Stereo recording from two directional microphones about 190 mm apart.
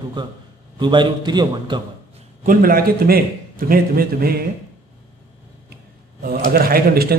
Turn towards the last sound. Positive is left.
turn(degrees=-55)  # may be behind; listen again after turning